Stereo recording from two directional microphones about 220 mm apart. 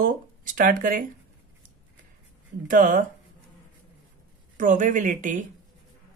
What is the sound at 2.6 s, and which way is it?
Speech, 35° right (ahead or behind).